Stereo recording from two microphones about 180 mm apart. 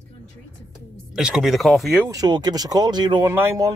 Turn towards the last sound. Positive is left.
turn(degrees=-15)  # may be behind; listen again after turning